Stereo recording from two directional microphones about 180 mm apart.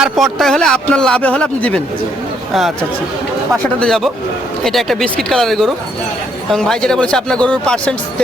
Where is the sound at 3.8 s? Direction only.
Centre (ahead or behind).